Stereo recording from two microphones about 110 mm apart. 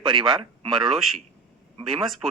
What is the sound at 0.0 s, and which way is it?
Speech, 50° right (ahead or behind).